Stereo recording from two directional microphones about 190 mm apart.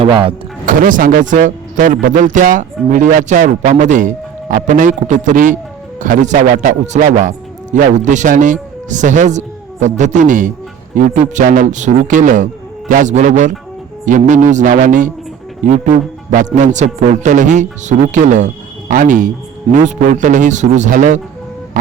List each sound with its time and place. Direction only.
0.0 s speech: 30° right (ahead or behind)
0.6 s a man's voice: 45° right (ahead or behind)